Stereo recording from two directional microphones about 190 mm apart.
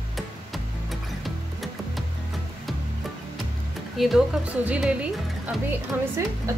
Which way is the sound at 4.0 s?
Centre (ahead or behind).